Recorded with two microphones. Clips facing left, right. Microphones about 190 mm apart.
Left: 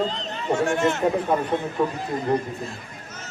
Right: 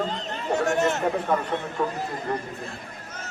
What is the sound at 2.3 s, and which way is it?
Speech, 20° left (ahead or behind).